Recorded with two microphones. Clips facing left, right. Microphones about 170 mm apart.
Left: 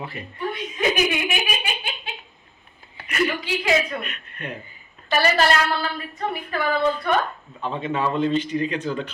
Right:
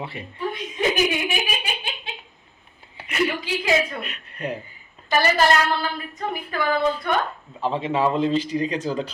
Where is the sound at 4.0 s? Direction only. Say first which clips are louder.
Right 3 dB; 30° right (ahead or behind).